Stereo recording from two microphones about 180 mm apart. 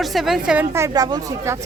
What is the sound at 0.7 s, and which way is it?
Speech, 20° right (ahead or behind).